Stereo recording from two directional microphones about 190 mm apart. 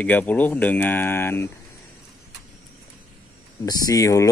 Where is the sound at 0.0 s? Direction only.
10° left (ahead or behind).